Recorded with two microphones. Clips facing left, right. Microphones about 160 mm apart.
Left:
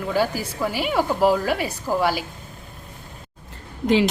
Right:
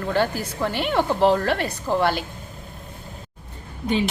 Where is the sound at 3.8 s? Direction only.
90° left.